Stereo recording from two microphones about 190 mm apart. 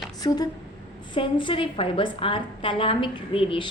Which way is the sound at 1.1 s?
25° left (ahead or behind).